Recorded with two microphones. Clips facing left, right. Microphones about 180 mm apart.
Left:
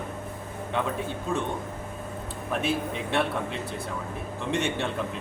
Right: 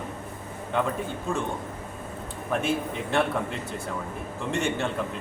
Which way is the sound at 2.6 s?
Centre (ahead or behind).